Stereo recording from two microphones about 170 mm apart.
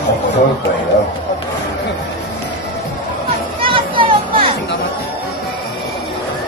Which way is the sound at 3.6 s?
30° right (ahead or behind).